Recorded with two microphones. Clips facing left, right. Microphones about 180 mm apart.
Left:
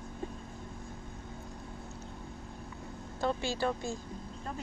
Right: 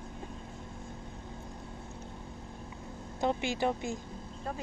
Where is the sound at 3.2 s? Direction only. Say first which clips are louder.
Right 2 dB; 20° right (ahead or behind).